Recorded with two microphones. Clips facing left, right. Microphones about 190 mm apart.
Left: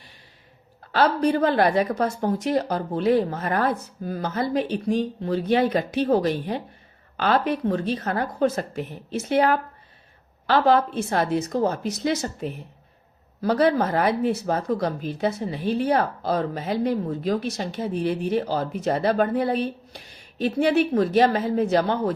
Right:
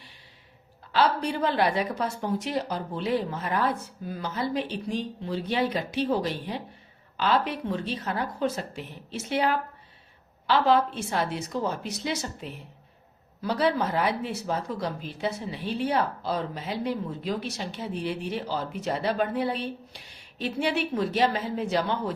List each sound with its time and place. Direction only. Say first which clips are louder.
0.9 s speech: left 5 dB; 45° left (ahead or behind)